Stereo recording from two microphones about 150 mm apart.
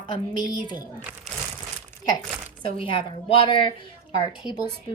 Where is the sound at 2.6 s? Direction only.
35° left (ahead or behind).